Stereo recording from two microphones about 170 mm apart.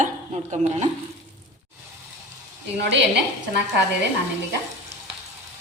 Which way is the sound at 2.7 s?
90° right.